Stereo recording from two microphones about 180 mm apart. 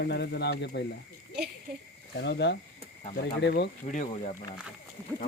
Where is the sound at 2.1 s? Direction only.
70° left (ahead or behind).